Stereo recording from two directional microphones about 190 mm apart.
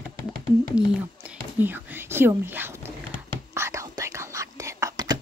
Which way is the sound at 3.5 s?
15° right (ahead or behind).